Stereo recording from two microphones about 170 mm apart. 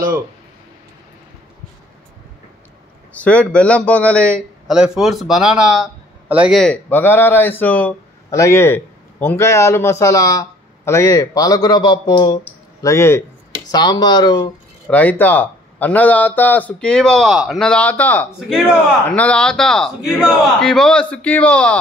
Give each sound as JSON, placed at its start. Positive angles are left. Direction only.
{"t": 3.2, "sound": "speech", "side_deg": 5}
{"t": 4.6, "sound": "a man's voice", "side_deg": -5}
{"t": 6.6, "sound": "speech", "side_deg": 10}
{"t": 12.8, "sound": "speech", "side_deg": 15}
{"t": 14.9, "sound": "a man's voice", "side_deg": 10}